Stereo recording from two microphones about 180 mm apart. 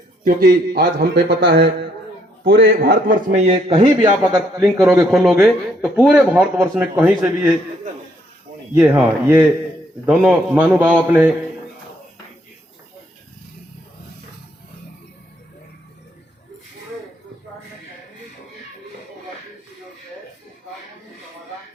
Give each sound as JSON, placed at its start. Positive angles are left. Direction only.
{"t": 0.3, "sound": "a man's voice", "side_deg": -55}
{"t": 2.4, "sound": "a man's voice", "side_deg": -55}
{"t": 3.3, "sound": "a man's voice", "side_deg": -35}
{"t": 4.7, "sound": "speech", "side_deg": -10}
{"t": 8.7, "sound": "speech", "side_deg": -10}